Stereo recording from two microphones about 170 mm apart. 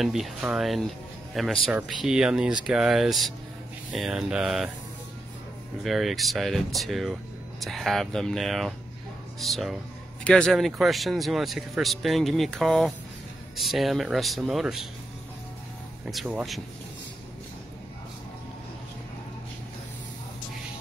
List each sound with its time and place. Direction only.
0.0 s speech: centre (ahead or behind)
5.9 s speech: centre (ahead or behind)
16.1 s speech: 5° right (ahead or behind)